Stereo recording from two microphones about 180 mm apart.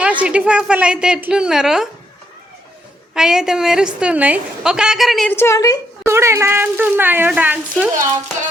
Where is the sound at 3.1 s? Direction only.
5° right (ahead or behind).